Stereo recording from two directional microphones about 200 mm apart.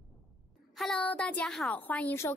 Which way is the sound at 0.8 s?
5° left (ahead or behind).